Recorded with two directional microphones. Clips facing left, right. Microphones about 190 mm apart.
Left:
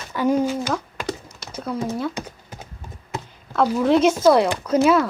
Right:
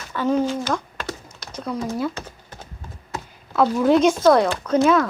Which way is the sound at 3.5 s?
Centre (ahead or behind).